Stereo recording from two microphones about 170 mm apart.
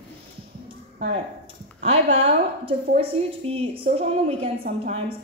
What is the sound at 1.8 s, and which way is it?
A woman's voice, 35° right (ahead or behind).